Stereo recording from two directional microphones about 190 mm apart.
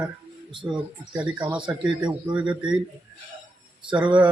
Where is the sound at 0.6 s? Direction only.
5° right (ahead or behind).